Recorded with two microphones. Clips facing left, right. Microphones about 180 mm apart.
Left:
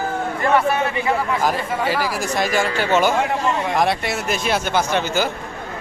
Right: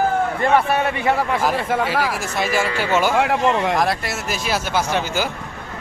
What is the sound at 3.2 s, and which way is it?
Speech, 75° right (ahead or behind).